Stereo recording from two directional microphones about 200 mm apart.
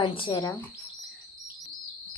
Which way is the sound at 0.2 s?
25° left (ahead or behind).